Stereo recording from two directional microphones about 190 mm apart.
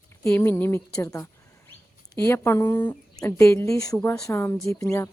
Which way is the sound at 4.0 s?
5° left (ahead or behind).